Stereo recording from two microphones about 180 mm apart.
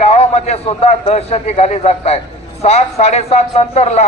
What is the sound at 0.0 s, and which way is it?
A man's voice, 35° left (ahead or behind).